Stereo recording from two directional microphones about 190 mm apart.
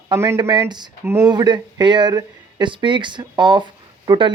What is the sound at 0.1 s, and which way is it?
Speech, 15° right (ahead or behind).